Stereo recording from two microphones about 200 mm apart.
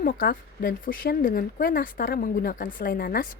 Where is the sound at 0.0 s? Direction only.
45° left (ahead or behind).